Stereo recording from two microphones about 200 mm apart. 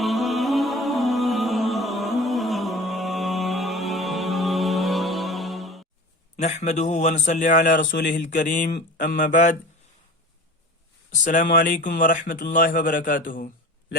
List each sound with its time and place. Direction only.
0.0 s music: centre (ahead or behind)
6.3 s a man's voice: 35° left (ahead or behind)
11.1 s a man's voice: 40° left (ahead or behind)